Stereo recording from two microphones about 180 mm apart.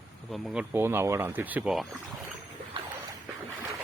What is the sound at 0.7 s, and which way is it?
Speech, 10° right (ahead or behind).